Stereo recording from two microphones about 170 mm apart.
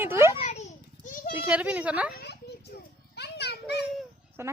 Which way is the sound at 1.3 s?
10° right (ahead or behind).